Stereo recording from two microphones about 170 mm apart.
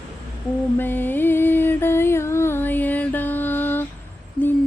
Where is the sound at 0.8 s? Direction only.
10° left (ahead or behind).